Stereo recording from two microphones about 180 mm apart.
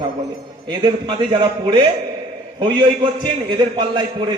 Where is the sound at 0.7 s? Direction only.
25° right (ahead or behind).